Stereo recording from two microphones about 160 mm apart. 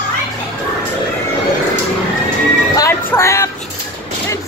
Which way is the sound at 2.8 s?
15° left (ahead or behind).